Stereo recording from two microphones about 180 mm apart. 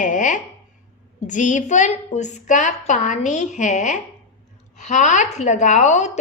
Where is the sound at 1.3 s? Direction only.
45° left (ahead or behind).